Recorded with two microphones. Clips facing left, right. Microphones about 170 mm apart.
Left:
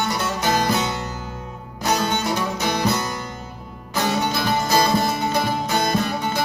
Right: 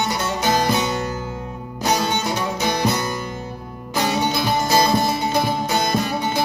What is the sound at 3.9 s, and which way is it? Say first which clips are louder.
Music: right 1 dB; 15° right (ahead or behind).